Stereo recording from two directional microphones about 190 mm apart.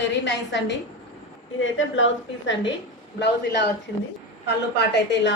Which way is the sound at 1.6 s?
90° left.